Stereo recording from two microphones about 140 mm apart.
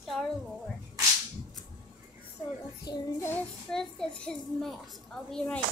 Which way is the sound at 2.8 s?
30° left (ahead or behind).